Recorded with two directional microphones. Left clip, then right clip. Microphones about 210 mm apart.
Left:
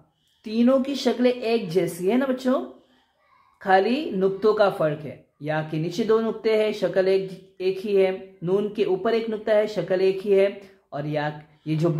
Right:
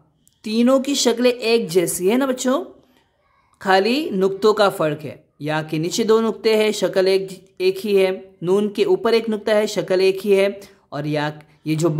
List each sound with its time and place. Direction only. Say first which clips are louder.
0.4 s speech: right 4 dB; 40° right (ahead or behind)